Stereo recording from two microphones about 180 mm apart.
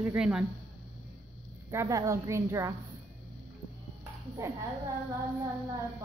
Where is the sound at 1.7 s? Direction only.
15° right (ahead or behind).